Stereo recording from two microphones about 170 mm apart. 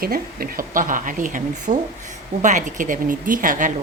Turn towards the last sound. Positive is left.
turn(degrees=-50)  # may be behind; listen again after turning